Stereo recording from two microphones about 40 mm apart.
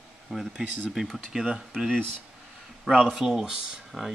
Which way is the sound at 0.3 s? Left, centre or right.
Centre.